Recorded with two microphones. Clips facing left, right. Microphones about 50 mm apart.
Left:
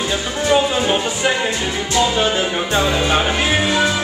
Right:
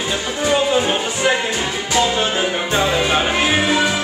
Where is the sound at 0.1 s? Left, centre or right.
Centre.